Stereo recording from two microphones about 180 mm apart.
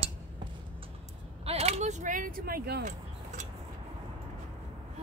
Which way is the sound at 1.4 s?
35° right (ahead or behind).